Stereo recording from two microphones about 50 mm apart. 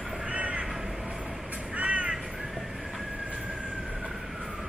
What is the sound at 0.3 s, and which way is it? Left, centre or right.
Crow, right.